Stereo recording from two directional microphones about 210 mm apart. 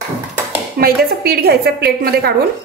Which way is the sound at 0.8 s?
45° right (ahead or behind).